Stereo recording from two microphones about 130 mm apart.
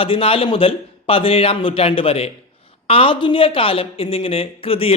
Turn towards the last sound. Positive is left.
turn(degrees=45)  # may be behind; listen again after turning